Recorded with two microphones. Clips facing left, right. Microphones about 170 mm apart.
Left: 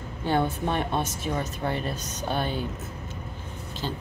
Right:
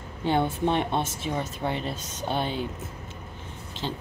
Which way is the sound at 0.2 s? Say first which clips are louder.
Right 1 dB; 20° right (ahead or behind).